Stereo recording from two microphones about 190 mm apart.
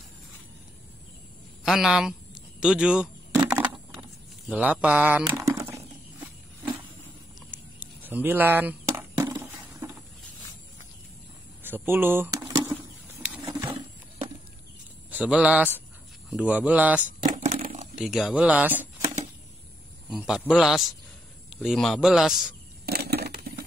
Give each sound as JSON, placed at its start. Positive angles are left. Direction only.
{"t": 1.6, "sound": "speech", "side_deg": 0}
{"t": 3.4, "sound": "a sound", "side_deg": -5}
{"t": 4.5, "sound": "speech", "side_deg": -5}
{"t": 7.8, "sound": "a sound", "side_deg": -10}
{"t": 11.6, "sound": "speech", "side_deg": -10}
{"t": 13.5, "sound": "wild animals", "side_deg": -20}
{"t": 15.0, "sound": "a man's voice", "side_deg": -5}
{"t": 17.2, "sound": "a sound", "side_deg": -45}
{"t": 17.9, "sound": "speech", "side_deg": 0}
{"t": 20.2, "sound": "speech", "side_deg": -5}
{"t": 22.8, "sound": "crushing", "side_deg": -55}